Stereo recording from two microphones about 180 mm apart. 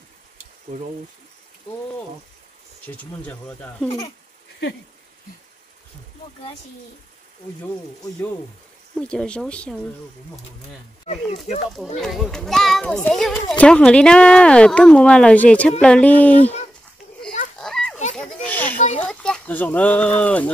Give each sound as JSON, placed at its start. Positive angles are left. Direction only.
{"t": 0.7, "sound": "speech", "side_deg": -45}
{"t": 2.8, "sound": "speech", "side_deg": 10}
{"t": 8.9, "sound": "speech", "side_deg": 5}
{"t": 11.1, "sound": "speech", "side_deg": 40}
{"t": 12.0, "sound": "speech", "side_deg": 0}
{"t": 17.6, "sound": "a sound", "side_deg": 5}
{"t": 18.1, "sound": "children playing", "side_deg": 5}
{"t": 18.9, "sound": "speech", "side_deg": 5}